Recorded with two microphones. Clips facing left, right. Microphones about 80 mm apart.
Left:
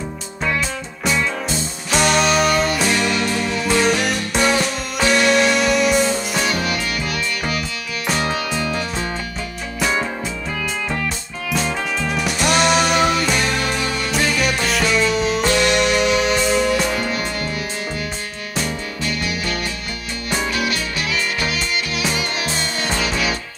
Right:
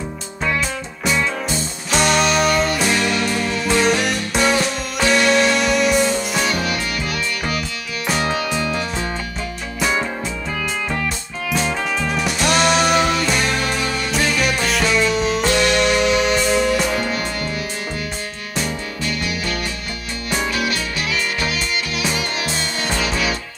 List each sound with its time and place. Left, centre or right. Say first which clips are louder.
1.9 s music: even; centre
12.2 s music: left 1 dB; centre
18.6 s music: even; centre